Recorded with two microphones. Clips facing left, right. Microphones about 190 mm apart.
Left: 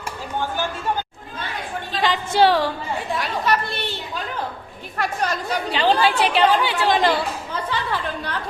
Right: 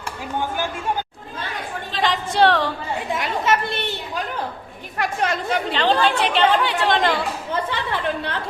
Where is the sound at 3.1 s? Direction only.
20° right (ahead or behind).